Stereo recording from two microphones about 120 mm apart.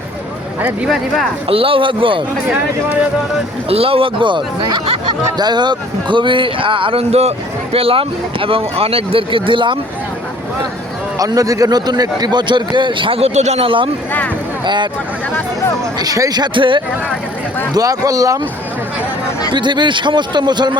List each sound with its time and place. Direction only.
0.6 s speech: 5° right (ahead or behind)
1.5 s speech: 50° right (ahead or behind)
3.7 s speech: 50° right (ahead or behind)
11.2 s a man's voice: 30° right (ahead or behind)
15.3 s speech: 20° left (ahead or behind)
16.0 s a man's voice: 30° right (ahead or behind)
17.7 s speech: 30° right (ahead or behind)
19.5 s a man's voice: 40° right (ahead or behind)